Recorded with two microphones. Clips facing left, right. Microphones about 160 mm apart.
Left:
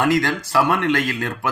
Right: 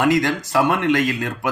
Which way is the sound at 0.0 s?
20° right (ahead or behind).